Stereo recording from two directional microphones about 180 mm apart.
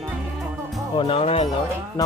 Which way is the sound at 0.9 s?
30° left (ahead or behind).